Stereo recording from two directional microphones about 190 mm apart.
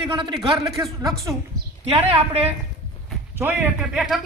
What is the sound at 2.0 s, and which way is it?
Speech, 30° right (ahead or behind).